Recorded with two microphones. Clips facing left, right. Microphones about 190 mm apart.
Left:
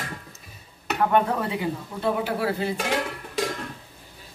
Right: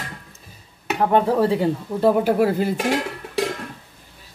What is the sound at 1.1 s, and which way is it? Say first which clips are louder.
Speech: right 8 dB; 35° right (ahead or behind).